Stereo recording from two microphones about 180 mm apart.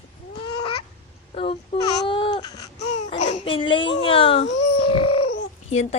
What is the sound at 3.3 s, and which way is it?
A child's voice, 30° left (ahead or behind).